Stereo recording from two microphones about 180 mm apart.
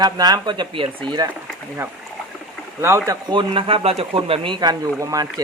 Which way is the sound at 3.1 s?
25° right (ahead or behind).